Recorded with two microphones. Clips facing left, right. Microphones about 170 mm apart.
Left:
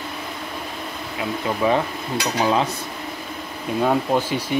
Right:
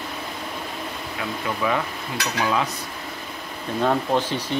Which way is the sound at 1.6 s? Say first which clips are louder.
Left 5 dB; 30° left (ahead or behind).